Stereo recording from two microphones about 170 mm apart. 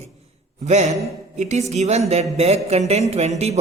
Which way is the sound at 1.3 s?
45° right (ahead or behind).